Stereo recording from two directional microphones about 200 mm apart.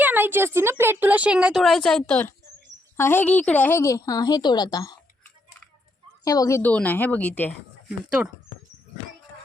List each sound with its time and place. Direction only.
0.0 s a woman's voice: 10° right (ahead or behind); by 7.5 s 10° left (ahead or behind)
8.2 s speech: 5° right (ahead or behind)